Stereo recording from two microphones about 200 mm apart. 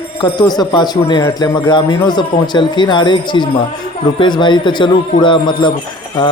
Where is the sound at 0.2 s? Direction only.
20° left (ahead or behind).